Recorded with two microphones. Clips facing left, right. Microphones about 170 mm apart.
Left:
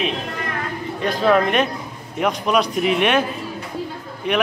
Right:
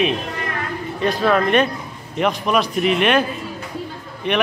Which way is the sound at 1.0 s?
10° left (ahead or behind).